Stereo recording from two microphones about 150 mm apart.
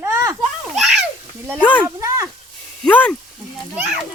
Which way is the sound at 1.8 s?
20° right (ahead or behind).